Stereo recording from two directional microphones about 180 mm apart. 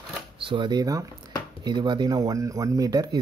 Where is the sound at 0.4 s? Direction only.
30° right (ahead or behind).